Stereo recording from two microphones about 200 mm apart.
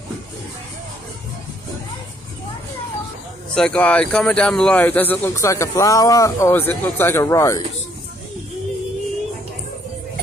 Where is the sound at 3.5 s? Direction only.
5° left (ahead or behind).